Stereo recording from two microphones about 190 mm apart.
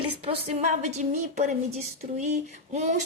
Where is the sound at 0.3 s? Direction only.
35° right (ahead or behind).